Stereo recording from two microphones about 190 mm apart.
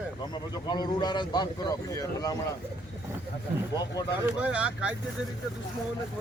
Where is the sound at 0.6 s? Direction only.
20° left (ahead or behind).